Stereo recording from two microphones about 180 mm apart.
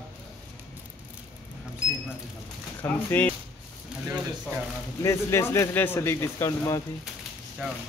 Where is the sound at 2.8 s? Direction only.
10° left (ahead or behind).